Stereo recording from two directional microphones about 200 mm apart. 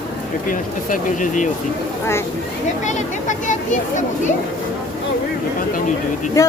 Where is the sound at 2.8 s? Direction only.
40° left (ahead or behind).